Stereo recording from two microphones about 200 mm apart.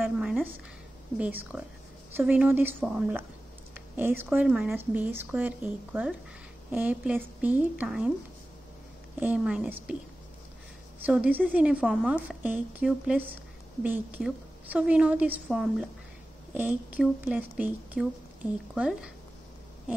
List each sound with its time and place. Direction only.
0.0 s a sound: 5° right (ahead or behind)
1.1 s speech: 5° right (ahead or behind)
9.2 s a woman's voice: 5° right (ahead or behind)
11.1 s a woman's voice: 5° right (ahead or behind)